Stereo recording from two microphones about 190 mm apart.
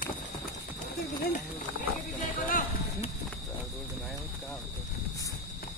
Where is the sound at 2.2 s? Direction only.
45° left (ahead or behind).